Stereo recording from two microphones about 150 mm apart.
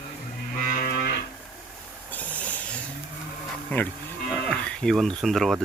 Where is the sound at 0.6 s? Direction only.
65° left (ahead or behind).